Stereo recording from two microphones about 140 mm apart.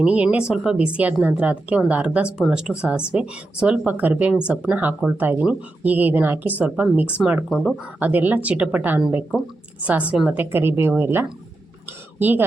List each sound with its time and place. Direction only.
0.0 s a woman's voice: 10° right (ahead or behind)